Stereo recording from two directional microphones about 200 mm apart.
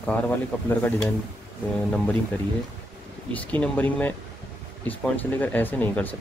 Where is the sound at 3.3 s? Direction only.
5° left (ahead or behind).